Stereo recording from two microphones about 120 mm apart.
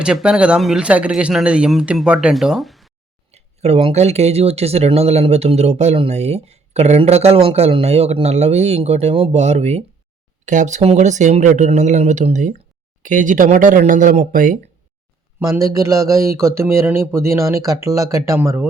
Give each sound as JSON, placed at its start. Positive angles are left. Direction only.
{"t": 0.0, "sound": "speech", "side_deg": -5}
{"t": 3.3, "sound": "speech", "side_deg": -60}
{"t": 10.4, "sound": "speech", "side_deg": -90}
{"t": 15.4, "sound": "speech", "side_deg": -25}